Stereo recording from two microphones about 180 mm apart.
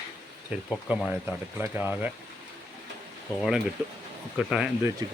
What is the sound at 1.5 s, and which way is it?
Speech, 10° right (ahead or behind).